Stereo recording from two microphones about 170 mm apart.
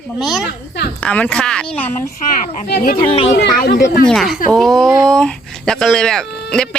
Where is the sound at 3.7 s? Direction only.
90° left.